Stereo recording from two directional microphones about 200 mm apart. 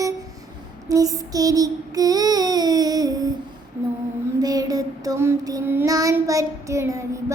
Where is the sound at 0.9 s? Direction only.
15° right (ahead or behind).